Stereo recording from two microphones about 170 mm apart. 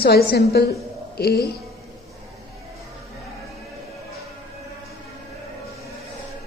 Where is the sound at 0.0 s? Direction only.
65° left (ahead or behind).